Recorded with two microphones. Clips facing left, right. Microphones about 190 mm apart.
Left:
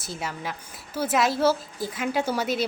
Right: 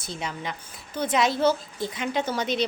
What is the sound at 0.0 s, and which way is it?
Speech, 5° left (ahead or behind).